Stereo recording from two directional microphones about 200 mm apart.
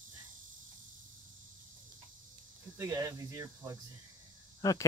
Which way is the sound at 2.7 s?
15° right (ahead or behind).